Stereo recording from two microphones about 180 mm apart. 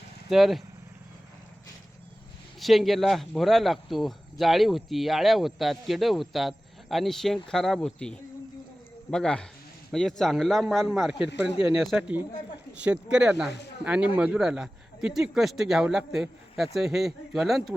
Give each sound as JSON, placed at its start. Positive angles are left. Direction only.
{"t": 0.3, "sound": "speech", "side_deg": 0}
{"t": 2.6, "sound": "speech", "side_deg": 0}
{"t": 11.3, "sound": "speech", "side_deg": 75}
{"t": 11.8, "sound": "speech", "side_deg": 0}